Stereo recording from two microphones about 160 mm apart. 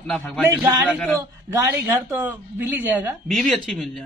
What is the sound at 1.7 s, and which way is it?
A woman's voice, 15° right (ahead or behind).